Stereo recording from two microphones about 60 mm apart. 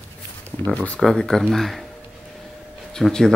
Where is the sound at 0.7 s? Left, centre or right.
Left.